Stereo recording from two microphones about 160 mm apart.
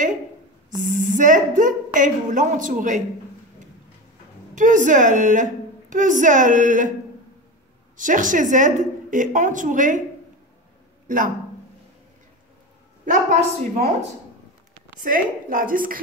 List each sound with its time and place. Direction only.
0.7 s a woman's voice: 55° right (ahead or behind)
4.6 s a woman's voice: 50° right (ahead or behind)
8.0 s a woman's voice: 55° right (ahead or behind)
11.1 s speech: 55° right (ahead or behind)
13.0 s a woman's voice: 50° right (ahead or behind)
15.0 s a woman's voice: 60° right (ahead or behind)